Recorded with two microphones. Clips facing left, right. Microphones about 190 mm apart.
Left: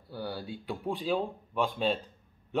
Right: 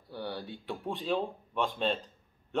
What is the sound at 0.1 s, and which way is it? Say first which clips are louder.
Speech: left 1 dB; centre (ahead or behind).